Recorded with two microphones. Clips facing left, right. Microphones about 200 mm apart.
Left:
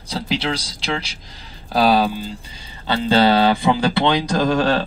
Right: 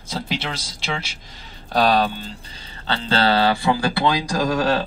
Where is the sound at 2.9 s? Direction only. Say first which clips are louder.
Left 5 dB; 15° left (ahead or behind).